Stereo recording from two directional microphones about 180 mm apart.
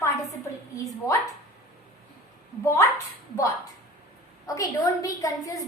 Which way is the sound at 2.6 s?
15° left (ahead or behind).